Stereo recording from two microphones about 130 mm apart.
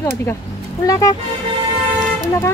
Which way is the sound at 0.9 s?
25° left (ahead or behind).